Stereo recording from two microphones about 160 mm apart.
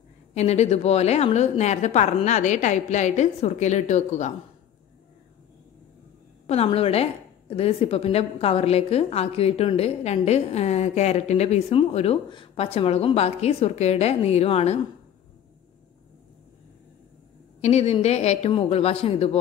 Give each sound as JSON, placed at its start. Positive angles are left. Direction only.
{"t": 0.3, "sound": "a woman's voice", "side_deg": 45}
{"t": 6.4, "sound": "a woman's voice", "side_deg": 40}
{"t": 17.6, "sound": "a woman's voice", "side_deg": 45}